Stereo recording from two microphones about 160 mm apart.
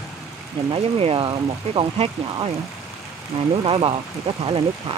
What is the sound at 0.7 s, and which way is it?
Speech, 35° right (ahead or behind).